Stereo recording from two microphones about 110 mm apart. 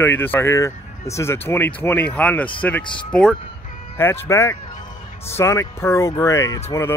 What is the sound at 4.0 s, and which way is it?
Speech, 20° left (ahead or behind).